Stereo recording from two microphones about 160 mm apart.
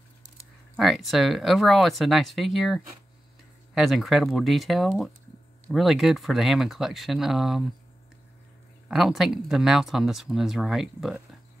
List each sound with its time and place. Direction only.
0.7 s speech: centre (ahead or behind)
8.8 s speech: centre (ahead or behind)